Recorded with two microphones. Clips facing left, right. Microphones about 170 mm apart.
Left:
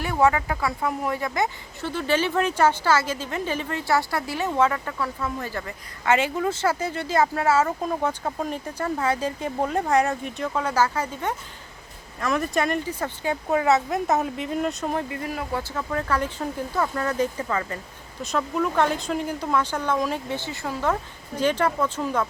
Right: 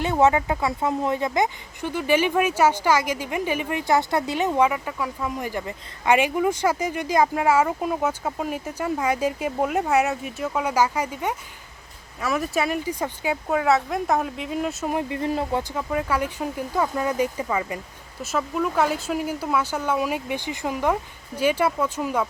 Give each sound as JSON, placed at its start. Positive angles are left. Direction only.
{"t": 0.0, "sound": "speech", "side_deg": -20}
{"t": 15.1, "sound": "speech", "side_deg": -25}
{"t": 15.7, "sound": "speech", "side_deg": -10}